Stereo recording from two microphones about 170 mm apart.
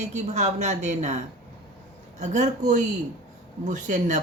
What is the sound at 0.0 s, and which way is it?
Speech, 45° right (ahead or behind).